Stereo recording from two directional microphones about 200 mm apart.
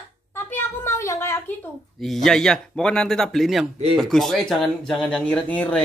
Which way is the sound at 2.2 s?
5° left (ahead or behind).